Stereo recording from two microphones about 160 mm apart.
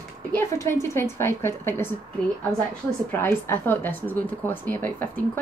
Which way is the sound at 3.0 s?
15° left (ahead or behind).